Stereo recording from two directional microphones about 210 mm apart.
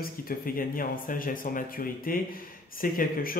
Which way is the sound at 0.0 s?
45° left (ahead or behind).